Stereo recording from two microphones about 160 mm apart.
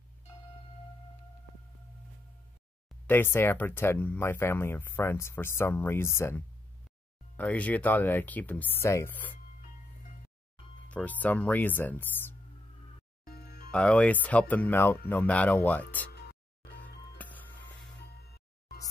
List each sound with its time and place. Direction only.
3.1 s speech: 15° left (ahead or behind)
10.9 s speech: 10° left (ahead or behind)
13.2 s music: 75° left (ahead or behind)
13.7 s speech: 5° left (ahead or behind)
16.1 s music: 90° left
17.2 s music: 10° left (ahead or behind)